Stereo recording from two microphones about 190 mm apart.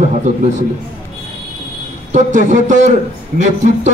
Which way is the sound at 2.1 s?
40° right (ahead or behind).